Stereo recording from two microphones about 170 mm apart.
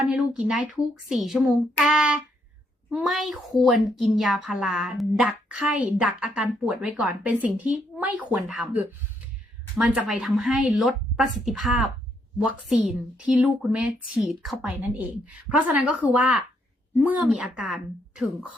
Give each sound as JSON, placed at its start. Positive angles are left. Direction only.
{"t": 0.0, "sound": "a woman's voice", "side_deg": -5}